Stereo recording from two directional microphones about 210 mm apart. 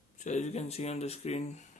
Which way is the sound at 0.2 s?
35° left (ahead or behind).